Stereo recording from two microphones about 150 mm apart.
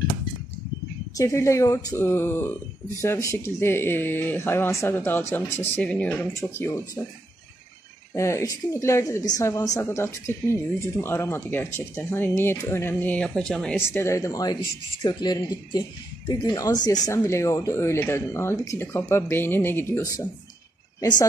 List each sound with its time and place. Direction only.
1.1 s speech: 20° left (ahead or behind)
8.1 s speech: 20° left (ahead or behind)
13.8 s speech: 20° left (ahead or behind)